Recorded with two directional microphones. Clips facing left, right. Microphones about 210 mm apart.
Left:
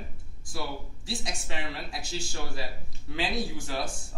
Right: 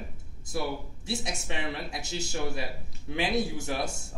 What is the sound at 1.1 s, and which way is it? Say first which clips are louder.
Speech: right 2 dB; 25° right (ahead or behind).